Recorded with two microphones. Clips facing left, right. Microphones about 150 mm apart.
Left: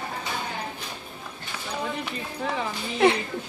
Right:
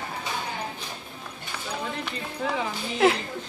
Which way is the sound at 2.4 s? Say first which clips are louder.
Right 1 dB; centre (ahead or behind).